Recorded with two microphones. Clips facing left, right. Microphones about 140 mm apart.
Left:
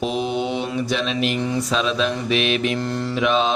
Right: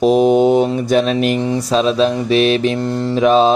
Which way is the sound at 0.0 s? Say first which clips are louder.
Right 12 dB; 40° right (ahead or behind).